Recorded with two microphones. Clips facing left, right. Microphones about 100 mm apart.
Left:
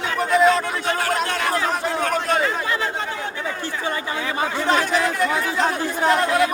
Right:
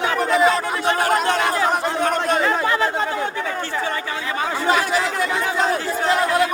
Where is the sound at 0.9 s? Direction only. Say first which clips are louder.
Right 6 dB; 25° right (ahead or behind).